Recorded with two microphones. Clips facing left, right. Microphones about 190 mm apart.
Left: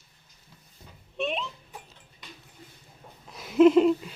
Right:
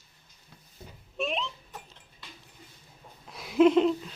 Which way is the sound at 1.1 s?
Centre (ahead or behind).